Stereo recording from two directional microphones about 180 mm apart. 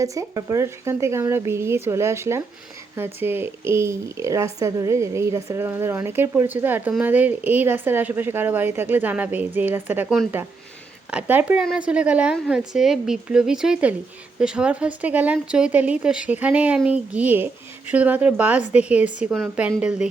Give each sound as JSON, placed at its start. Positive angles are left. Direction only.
{"t": 0.0, "sound": "a woman's voice", "side_deg": -15}